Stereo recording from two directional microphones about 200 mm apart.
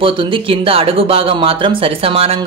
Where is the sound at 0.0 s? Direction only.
25° right (ahead or behind).